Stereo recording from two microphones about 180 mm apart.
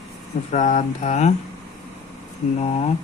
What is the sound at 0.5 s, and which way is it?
Mantra, 40° left (ahead or behind).